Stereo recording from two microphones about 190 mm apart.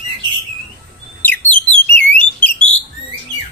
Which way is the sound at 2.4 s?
10° left (ahead or behind).